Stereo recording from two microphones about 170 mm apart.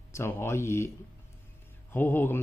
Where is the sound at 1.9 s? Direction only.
10° left (ahead or behind).